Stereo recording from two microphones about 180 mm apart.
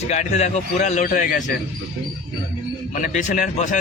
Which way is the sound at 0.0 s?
40° left (ahead or behind).